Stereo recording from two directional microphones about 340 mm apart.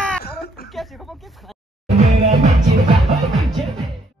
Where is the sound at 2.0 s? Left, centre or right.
Centre.